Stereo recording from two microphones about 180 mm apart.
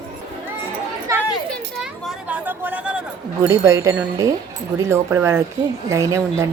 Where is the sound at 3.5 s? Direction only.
15° right (ahead or behind).